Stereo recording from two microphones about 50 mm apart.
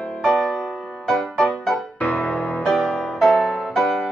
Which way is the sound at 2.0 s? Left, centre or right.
Left.